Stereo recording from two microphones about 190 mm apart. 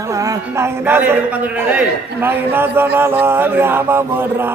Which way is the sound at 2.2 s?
10° right (ahead or behind).